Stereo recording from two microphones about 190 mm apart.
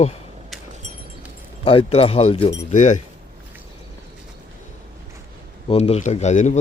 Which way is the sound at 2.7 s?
40° left (ahead or behind).